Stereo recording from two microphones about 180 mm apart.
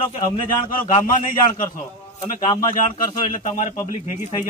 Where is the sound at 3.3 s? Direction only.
45° left (ahead or behind).